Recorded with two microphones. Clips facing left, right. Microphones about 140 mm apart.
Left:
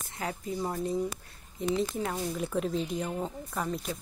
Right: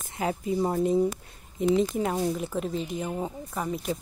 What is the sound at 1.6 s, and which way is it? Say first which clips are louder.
Speech: right 6 dB; 15° right (ahead or behind).